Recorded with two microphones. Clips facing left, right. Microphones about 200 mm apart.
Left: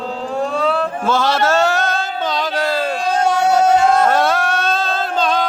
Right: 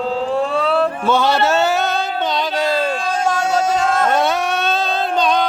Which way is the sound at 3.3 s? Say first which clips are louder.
Left 7 dB; 60° left (ahead or behind).